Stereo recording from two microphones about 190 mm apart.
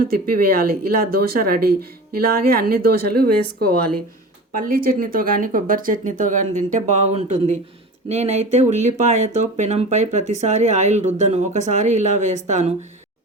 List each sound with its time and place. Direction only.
0.0 s speech: 50° right (ahead or behind)
4.5 s speech: 50° right (ahead or behind)